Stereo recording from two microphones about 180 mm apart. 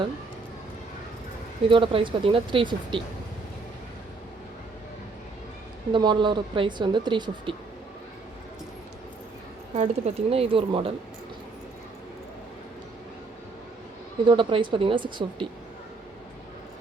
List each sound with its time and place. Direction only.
1.7 s speech: 30° right (ahead or behind)
5.9 s speech: 25° right (ahead or behind)
9.7 s speech: 35° right (ahead or behind)
14.3 s speech: 25° right (ahead or behind)